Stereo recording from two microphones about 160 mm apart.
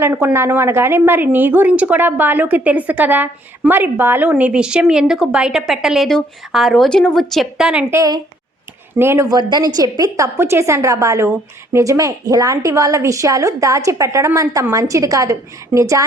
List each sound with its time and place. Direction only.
0.0 s a woman's voice: 15° right (ahead or behind)
7.9 s a woman's voice: 25° right (ahead or behind)